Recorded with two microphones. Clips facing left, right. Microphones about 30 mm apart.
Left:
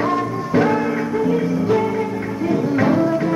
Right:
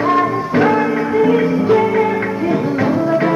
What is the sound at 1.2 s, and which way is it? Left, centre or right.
Music, right.